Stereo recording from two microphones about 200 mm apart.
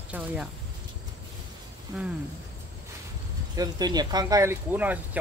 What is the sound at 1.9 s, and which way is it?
Speech, 5° right (ahead or behind).